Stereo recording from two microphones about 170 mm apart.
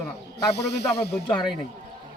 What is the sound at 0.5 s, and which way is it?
Speech, 75° left (ahead or behind).